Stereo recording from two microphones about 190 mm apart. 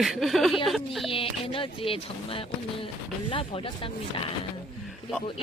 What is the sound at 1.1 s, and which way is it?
Speech, 30° left (ahead or behind).